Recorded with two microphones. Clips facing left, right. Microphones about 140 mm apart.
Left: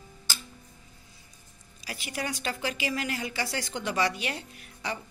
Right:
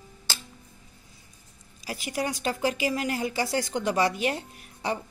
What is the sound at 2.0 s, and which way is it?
A woman's voice, 40° right (ahead or behind).